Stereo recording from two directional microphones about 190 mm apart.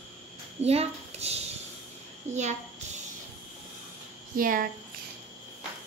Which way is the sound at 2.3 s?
35° right (ahead or behind).